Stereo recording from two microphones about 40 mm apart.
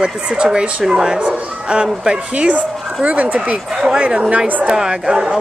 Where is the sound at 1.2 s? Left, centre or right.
Right.